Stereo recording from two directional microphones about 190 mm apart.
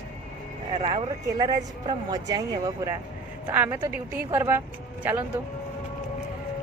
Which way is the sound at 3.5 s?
10° right (ahead or behind).